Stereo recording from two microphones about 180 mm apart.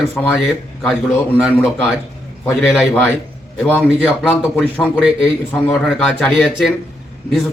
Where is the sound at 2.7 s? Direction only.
10° left (ahead or behind).